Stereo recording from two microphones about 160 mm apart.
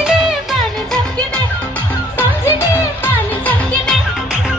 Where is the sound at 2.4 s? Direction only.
15° left (ahead or behind).